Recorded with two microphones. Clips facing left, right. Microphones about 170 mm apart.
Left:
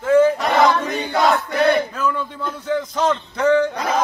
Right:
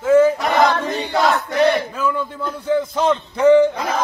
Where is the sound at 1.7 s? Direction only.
10° right (ahead or behind).